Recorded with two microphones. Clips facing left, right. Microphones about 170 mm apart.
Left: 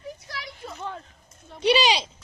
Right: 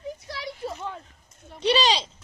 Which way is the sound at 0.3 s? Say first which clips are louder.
Right 5 dB; 30° right (ahead or behind).